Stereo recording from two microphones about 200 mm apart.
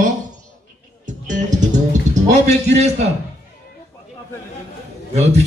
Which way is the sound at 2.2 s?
35° right (ahead or behind).